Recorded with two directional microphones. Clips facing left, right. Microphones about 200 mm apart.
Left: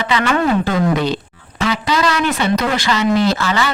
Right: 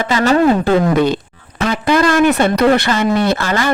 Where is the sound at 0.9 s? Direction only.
50° right (ahead or behind).